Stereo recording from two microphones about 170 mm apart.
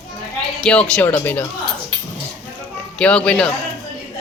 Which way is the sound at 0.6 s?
5° left (ahead or behind).